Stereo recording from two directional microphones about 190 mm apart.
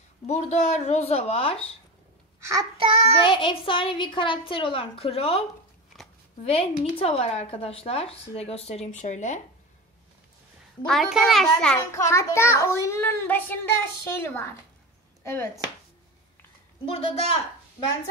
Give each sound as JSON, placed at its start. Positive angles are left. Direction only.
{"t": 0.3, "sound": "speech", "side_deg": 35}
{"t": 2.8, "sound": "child singing", "side_deg": -30}
{"t": 3.2, "sound": "a woman's voice", "side_deg": 25}
{"t": 5.9, "sound": "a sound", "side_deg": 0}
{"t": 6.4, "sound": "speech", "side_deg": 30}
{"t": 10.9, "sound": "a child's voice", "side_deg": 0}
{"t": 12.0, "sound": "a child's voice", "side_deg": 15}
{"t": 16.8, "sound": "speech", "side_deg": 30}